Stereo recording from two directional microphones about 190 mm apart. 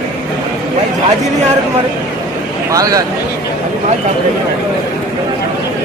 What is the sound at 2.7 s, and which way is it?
Speech, 20° right (ahead or behind).